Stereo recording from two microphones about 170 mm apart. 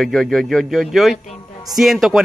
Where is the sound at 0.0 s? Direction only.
Centre (ahead or behind).